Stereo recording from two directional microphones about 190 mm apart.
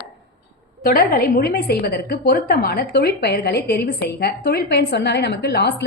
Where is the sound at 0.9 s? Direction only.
50° left (ahead or behind).